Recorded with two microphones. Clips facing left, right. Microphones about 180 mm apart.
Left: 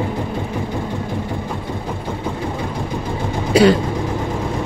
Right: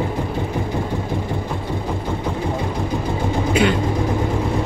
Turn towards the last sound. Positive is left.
turn(degrees=40)  # may be behind; listen again after turning